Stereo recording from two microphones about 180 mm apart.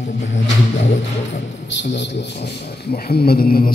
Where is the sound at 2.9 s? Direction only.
60° left (ahead or behind).